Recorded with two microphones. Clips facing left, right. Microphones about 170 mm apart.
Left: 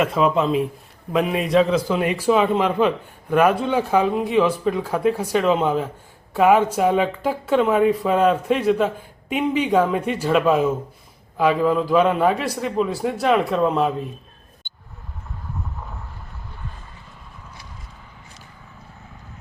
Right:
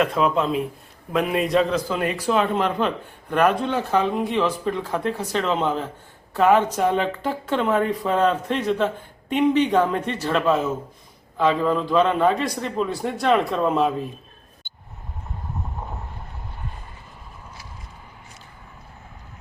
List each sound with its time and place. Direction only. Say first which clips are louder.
0.0 s a man's voice: left 2 dB; centre (ahead or behind)
1.8 s a man's voice: left 3 dB; 10° left (ahead or behind)
14.6 s a sound: left 1 dB; 5° right (ahead or behind)
15.8 s vehicle: right 3 dB; 30° right (ahead or behind)